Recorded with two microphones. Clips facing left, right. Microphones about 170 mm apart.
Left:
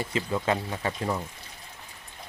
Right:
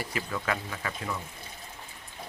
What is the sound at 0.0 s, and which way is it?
Speech, 25° left (ahead or behind).